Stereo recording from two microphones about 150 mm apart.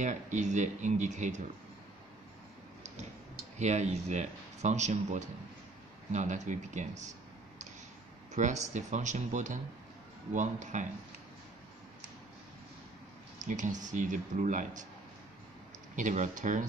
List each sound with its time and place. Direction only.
0.0 s speech: 55° right (ahead or behind)
3.5 s speech: 50° right (ahead or behind)
8.3 s speech: 55° right (ahead or behind)
13.4 s speech: 55° right (ahead or behind)
16.0 s speech: 55° right (ahead or behind)